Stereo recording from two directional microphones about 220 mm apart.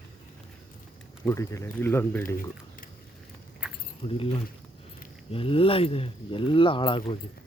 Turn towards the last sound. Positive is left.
turn(degrees=20)  # may be behind; listen again after turning